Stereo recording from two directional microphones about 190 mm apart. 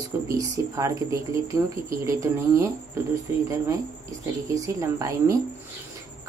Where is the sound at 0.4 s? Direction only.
15° right (ahead or behind).